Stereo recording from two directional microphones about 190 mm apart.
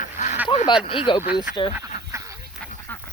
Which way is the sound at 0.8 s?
25° left (ahead or behind).